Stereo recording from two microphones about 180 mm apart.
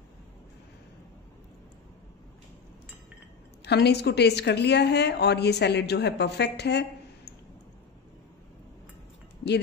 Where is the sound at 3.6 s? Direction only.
70° left (ahead or behind).